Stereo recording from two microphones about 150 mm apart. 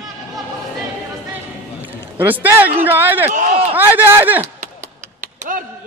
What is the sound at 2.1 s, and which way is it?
A man's voice, 10° right (ahead or behind).